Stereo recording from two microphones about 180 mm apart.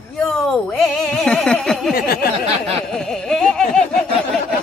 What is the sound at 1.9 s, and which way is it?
Speech, 60° left (ahead or behind).